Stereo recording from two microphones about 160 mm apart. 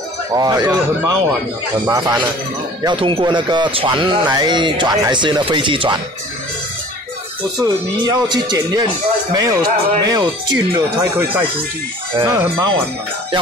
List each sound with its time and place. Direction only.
0.3 s speech: 25° right (ahead or behind)
7.6 s speech: 25° right (ahead or behind)
12.2 s speech: 20° right (ahead or behind)